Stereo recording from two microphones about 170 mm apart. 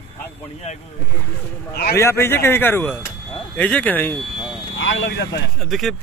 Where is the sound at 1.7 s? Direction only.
65° left (ahead or behind).